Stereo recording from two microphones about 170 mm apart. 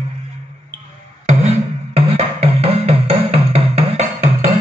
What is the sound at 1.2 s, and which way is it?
Music, 40° right (ahead or behind).